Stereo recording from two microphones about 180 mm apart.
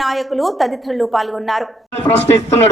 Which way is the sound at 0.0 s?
Centre (ahead or behind).